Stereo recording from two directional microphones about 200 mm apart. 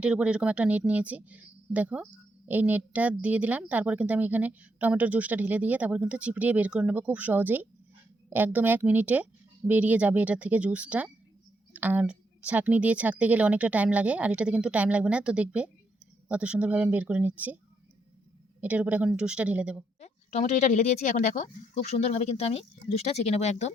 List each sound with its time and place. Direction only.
0.0 s a woman's voice: 5° right (ahead or behind)
18.6 s a woman's voice: 5° right (ahead or behind)
20.0 s speech: 35° left (ahead or behind)